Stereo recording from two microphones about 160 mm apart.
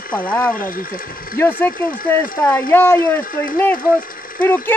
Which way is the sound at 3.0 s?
60° left (ahead or behind).